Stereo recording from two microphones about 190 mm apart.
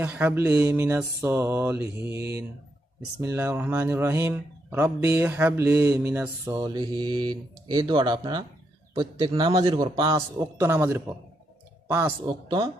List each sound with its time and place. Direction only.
0.0 s speech: 10° right (ahead or behind)
3.2 s a man's voice: 10° right (ahead or behind)
10.6 s speech: 10° right (ahead or behind)
12.3 s a man's voice: 25° right (ahead or behind)